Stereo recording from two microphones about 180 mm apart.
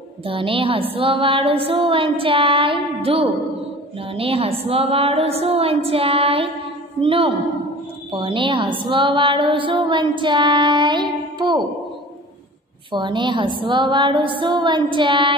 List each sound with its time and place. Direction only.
0.2 s a woman's voice: 30° right (ahead or behind)
12.9 s a woman's voice: 25° right (ahead or behind)